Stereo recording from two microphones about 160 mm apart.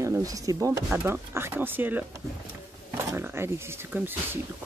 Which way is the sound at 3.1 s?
15° right (ahead or behind).